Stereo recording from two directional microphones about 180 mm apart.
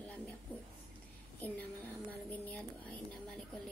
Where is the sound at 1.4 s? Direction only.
10° left (ahead or behind).